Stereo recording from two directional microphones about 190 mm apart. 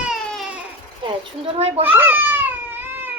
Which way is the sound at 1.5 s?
30° right (ahead or behind).